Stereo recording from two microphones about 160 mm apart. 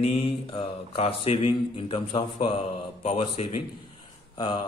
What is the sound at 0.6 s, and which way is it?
A man's voice, 35° left (ahead or behind).